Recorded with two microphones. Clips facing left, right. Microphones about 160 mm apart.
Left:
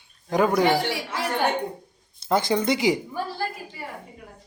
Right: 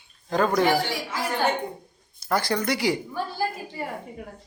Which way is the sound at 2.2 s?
20° left (ahead or behind).